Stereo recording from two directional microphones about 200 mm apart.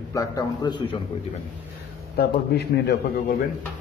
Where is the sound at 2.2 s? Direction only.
50° left (ahead or behind).